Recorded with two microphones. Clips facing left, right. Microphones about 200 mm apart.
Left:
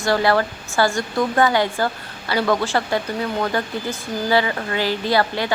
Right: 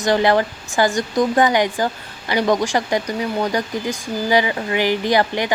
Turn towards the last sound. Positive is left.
turn(degrees=-15)  # may be behind; listen again after turning